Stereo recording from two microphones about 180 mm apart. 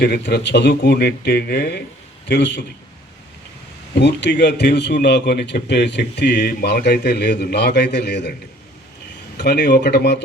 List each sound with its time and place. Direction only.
0.0 s speech: 65° left (ahead or behind)
2.2 s a man's voice: 75° left (ahead or behind)
3.9 s a man's voice: 70° left (ahead or behind)
9.4 s a man's voice: 70° left (ahead or behind)